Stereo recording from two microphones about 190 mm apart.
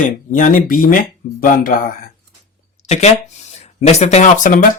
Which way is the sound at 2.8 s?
35° left (ahead or behind).